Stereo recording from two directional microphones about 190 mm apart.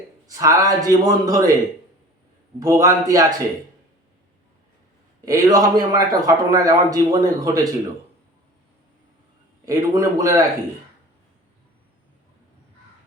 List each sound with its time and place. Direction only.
0.3 s speech: 20° right (ahead or behind)
2.6 s a man's voice: 15° right (ahead or behind)
5.2 s speech: 15° right (ahead or behind)
9.6 s a man's voice: 15° right (ahead or behind)